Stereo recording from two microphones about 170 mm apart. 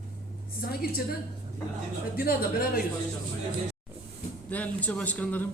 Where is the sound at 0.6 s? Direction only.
65° left (ahead or behind).